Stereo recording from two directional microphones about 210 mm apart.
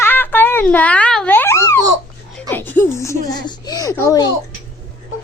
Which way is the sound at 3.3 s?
20° left (ahead or behind).